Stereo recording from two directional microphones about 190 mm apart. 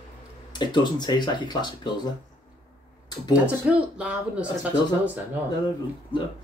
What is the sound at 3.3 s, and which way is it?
Speech, 5° right (ahead or behind).